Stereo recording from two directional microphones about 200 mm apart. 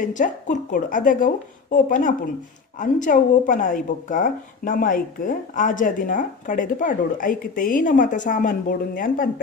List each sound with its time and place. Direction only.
0.0 s a woman's voice: 40° left (ahead or behind)